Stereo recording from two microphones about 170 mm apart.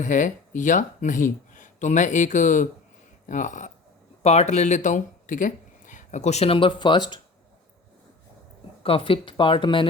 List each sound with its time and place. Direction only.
0.0 s speech: 50° left (ahead or behind); by 7.2 s 25° left (ahead or behind)
8.8 s speech: 30° left (ahead or behind)